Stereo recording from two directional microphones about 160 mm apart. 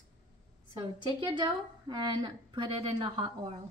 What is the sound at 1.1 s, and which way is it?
A woman's voice, 30° right (ahead or behind).